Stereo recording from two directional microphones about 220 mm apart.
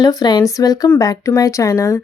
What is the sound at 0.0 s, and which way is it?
Speech, 15° left (ahead or behind).